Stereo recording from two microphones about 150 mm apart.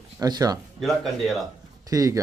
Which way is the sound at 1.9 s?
20° right (ahead or behind).